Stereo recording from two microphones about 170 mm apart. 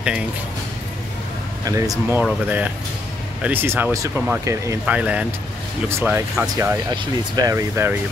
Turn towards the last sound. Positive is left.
turn(degrees=-15)  # may be behind; listen again after turning